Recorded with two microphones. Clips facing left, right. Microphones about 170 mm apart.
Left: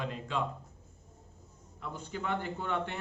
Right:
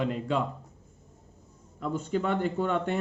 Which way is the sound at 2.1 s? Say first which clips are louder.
Right 7 dB; 45° right (ahead or behind).